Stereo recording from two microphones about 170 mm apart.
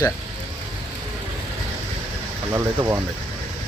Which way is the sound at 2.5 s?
15° right (ahead or behind).